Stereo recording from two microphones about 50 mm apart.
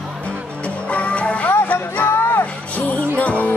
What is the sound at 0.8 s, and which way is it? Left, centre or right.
Music, left.